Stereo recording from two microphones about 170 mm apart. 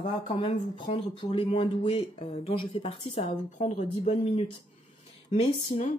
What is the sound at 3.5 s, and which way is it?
Speech, 45° left (ahead or behind).